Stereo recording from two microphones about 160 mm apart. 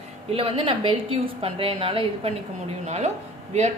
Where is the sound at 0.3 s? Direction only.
35° right (ahead or behind).